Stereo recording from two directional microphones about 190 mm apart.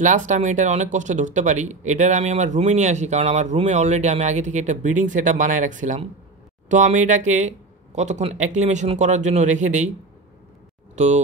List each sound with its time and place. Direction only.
0.0 s speech: 40° right (ahead or behind)